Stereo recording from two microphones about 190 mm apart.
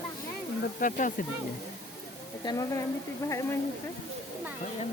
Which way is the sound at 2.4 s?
20° left (ahead or behind).